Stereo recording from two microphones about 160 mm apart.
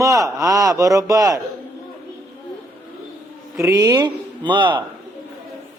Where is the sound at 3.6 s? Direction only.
20° right (ahead or behind).